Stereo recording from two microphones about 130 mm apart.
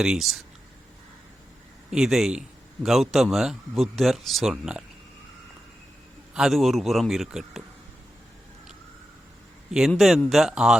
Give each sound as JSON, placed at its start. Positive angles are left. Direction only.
{"t": 0.0, "sound": "speech", "side_deg": -5}
{"t": 1.9, "sound": "speech", "side_deg": 0}
{"t": 6.3, "sound": "speech", "side_deg": 0}
{"t": 9.9, "sound": "speech", "side_deg": 5}